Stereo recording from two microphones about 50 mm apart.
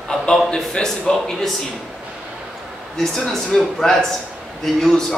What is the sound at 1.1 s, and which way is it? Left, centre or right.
Speech, centre.